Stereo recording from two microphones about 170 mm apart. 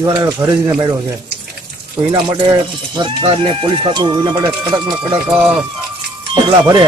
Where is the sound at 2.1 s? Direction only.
25° right (ahead or behind).